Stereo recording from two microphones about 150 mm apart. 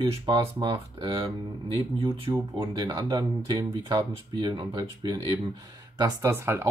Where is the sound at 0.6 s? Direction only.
30° right (ahead or behind).